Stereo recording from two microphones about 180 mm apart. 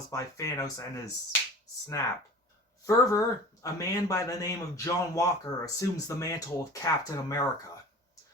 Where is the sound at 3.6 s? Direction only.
20° left (ahead or behind).